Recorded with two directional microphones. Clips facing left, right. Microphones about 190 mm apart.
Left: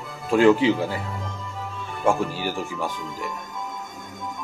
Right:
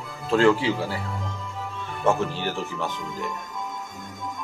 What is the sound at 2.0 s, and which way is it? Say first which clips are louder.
Speech: left 1 dB; 10° left (ahead or behind).